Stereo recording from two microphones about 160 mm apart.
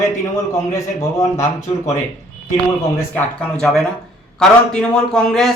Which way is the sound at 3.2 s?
5° left (ahead or behind).